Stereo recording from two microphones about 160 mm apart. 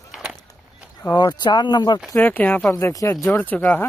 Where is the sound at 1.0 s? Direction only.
25° left (ahead or behind).